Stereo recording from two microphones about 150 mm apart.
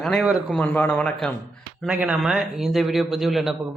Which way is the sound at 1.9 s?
10° right (ahead or behind).